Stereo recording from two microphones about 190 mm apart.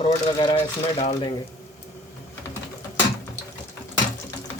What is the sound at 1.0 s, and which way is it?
Speech, 35° left (ahead or behind).